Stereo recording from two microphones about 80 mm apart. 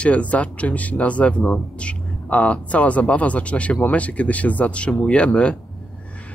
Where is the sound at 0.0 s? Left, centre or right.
Centre.